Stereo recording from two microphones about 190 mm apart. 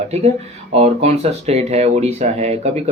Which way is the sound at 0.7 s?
35° right (ahead or behind).